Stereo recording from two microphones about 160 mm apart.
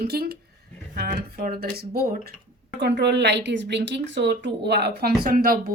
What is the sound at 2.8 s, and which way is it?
A woman's voice, 90° right.